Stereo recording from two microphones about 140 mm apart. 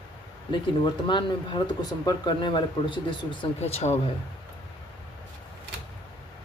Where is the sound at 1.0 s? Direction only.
35° left (ahead or behind).